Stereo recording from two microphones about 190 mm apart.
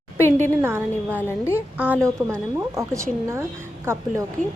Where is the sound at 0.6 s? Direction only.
10° right (ahead or behind).